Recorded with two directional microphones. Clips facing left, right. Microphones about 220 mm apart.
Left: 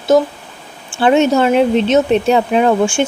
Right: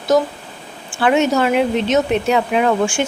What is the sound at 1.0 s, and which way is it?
Speech, 30° left (ahead or behind).